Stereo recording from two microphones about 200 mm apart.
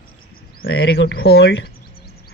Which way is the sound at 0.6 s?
55° left (ahead or behind).